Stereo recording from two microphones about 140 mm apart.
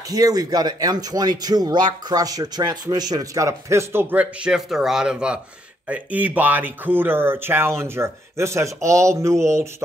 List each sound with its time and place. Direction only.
0.1 s a man's voice: 25° right (ahead or behind)